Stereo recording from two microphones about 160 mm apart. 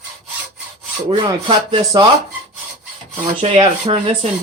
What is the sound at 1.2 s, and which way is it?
Speech, 30° right (ahead or behind).